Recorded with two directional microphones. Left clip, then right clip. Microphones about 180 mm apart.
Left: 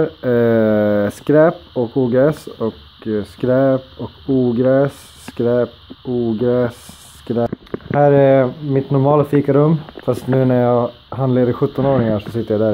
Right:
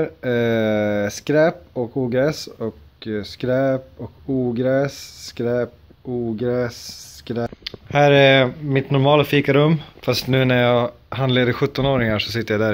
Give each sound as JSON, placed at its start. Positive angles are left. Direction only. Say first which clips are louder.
{"t": 0.0, "sound": "speech", "louder": "left 5 dB", "side_deg": -10}
{"t": 7.9, "sound": "speech", "louder": "left 2 dB", "side_deg": -25}